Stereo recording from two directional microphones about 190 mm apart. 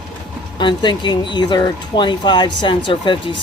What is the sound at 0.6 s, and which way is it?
Speech, 25° left (ahead or behind).